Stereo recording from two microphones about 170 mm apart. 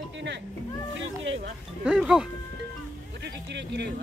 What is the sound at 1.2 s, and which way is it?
Speech, 90° right.